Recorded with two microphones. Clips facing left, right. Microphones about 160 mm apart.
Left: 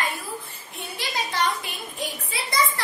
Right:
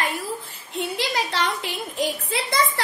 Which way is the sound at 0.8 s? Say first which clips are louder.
Right 6 dB; 90° right.